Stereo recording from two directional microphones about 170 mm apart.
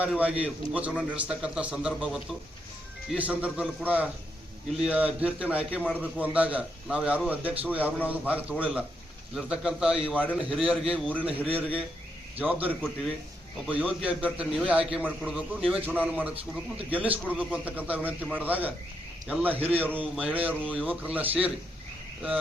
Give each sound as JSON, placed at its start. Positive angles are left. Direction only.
{"t": 0.0, "sound": "a man's voice", "side_deg": -5}
{"t": 12.4, "sound": "a man's voice", "side_deg": -10}
{"t": 16.3, "sound": "a man's voice", "side_deg": -35}
{"t": 16.9, "sound": "a man's voice", "side_deg": -10}